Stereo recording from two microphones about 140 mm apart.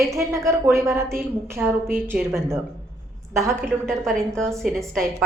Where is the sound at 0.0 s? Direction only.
20° right (ahead or behind).